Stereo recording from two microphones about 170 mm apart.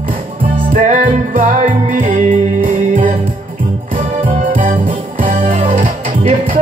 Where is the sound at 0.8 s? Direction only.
50° right (ahead or behind).